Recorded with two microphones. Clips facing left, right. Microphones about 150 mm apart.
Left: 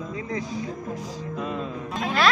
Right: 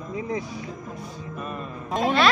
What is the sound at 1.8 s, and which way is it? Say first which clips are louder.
Speech: right 8 dB; 40° right (ahead or behind).